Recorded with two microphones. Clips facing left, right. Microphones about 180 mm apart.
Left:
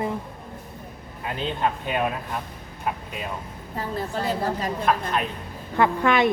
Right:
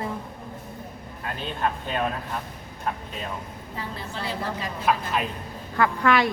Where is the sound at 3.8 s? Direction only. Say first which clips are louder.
Left 6 dB; 45° left (ahead or behind).